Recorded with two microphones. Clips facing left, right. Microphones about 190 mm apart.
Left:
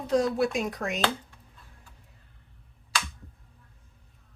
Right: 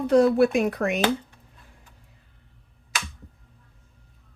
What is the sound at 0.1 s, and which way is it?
Speech, 60° right (ahead or behind).